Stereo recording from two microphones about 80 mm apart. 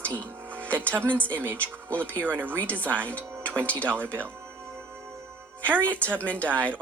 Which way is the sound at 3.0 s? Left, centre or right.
Centre.